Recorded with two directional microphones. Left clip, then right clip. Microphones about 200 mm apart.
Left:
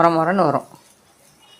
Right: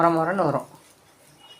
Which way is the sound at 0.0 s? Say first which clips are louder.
Left 5 dB; 20° left (ahead or behind).